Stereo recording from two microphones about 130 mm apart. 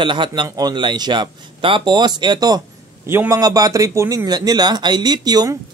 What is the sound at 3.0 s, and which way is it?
Speech, 20° right (ahead or behind).